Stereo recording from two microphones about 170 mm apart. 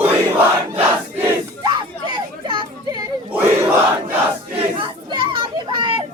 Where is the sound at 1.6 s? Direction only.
25° right (ahead or behind).